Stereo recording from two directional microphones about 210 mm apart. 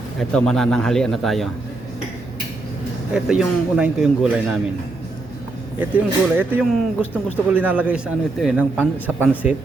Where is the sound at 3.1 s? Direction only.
5° right (ahead or behind).